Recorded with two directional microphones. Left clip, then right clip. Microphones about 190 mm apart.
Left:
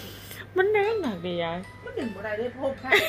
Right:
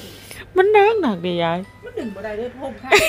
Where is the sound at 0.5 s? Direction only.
35° right (ahead or behind).